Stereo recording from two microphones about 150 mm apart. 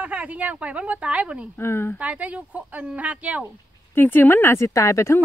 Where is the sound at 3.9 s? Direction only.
15° left (ahead or behind).